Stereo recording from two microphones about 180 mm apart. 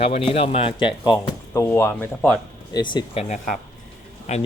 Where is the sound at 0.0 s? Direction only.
30° left (ahead or behind); by 2.4 s 5° left (ahead or behind).